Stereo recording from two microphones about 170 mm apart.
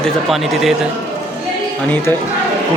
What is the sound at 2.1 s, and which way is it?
Speech, 10° left (ahead or behind).